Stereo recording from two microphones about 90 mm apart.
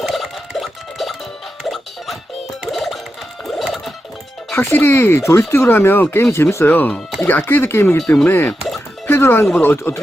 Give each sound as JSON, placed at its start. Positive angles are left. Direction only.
{"t": 0.0, "sound": "a sound", "side_deg": 0}
{"t": 1.6, "sound": "music", "side_deg": 0}
{"t": 3.4, "sound": "a sound", "side_deg": 0}
{"t": 4.5, "sound": "speech", "side_deg": 25}
{"t": 6.7, "sound": "speech", "side_deg": 20}
{"t": 8.4, "sound": "music", "side_deg": 0}
{"t": 9.0, "sound": "speech", "side_deg": 25}